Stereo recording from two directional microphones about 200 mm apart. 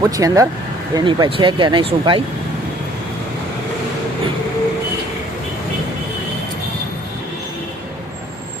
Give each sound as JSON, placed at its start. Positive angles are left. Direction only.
{"t": 0.0, "sound": "speech", "side_deg": -15}